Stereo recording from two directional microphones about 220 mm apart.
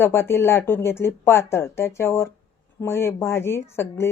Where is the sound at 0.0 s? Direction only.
10° left (ahead or behind).